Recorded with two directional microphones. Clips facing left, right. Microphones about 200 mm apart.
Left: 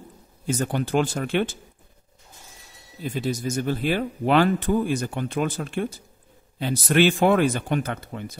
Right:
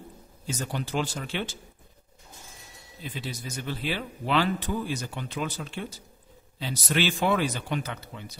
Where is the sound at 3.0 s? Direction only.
45° left (ahead or behind).